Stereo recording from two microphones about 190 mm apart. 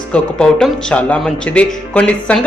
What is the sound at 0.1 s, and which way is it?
Speech, 5° left (ahead or behind).